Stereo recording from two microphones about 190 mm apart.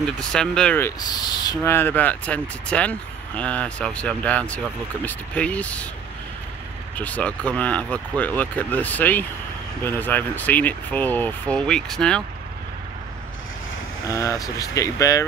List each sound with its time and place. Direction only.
0.2 s speech: 5° left (ahead or behind)
7.0 s speech: 5° left (ahead or behind)
14.0 s speech: 15° left (ahead or behind)